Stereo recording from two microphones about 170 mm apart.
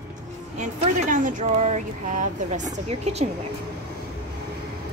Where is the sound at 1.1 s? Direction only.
50° right (ahead or behind).